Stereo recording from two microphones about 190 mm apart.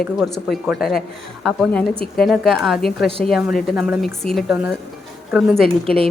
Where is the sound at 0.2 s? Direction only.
Centre (ahead or behind).